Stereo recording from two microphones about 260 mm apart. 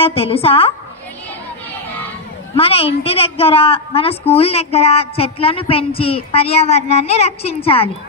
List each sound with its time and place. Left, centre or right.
0.0 s a woman's voice: left
2.5 s a woman's voice: left